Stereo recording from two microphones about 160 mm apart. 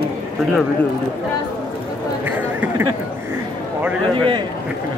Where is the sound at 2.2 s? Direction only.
10° right (ahead or behind).